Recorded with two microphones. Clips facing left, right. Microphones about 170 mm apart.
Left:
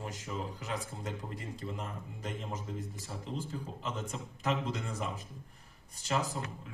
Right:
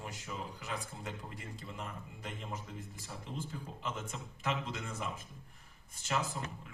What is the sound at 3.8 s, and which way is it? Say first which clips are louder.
Speech: even; 35° left (ahead or behind).